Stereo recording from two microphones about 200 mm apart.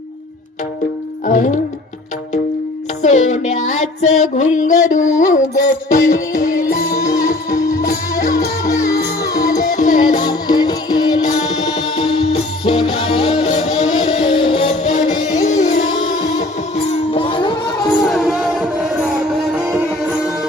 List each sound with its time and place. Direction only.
1.3 s female singing: 40° left (ahead or behind)
3.0 s female singing: 35° left (ahead or behind)
5.9 s music: 45° left (ahead or behind)
7.0 s music: 15° left (ahead or behind)
9.3 s music: 15° left (ahead or behind)
9.7 s music: 40° left (ahead or behind)
10.2 s music: 20° left (ahead or behind)
18.0 s music: centre (ahead or behind)
19.6 s music: 5° right (ahead or behind)